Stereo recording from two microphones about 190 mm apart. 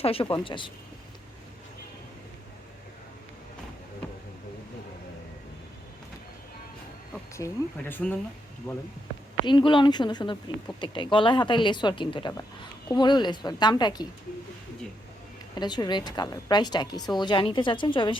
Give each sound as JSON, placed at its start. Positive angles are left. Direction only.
{"t": 0.0, "sound": "speech", "side_deg": 30}
{"t": 7.3, "sound": "speech", "side_deg": 15}
{"t": 9.5, "sound": "speech", "side_deg": 25}
{"t": 15.5, "sound": "speech", "side_deg": 20}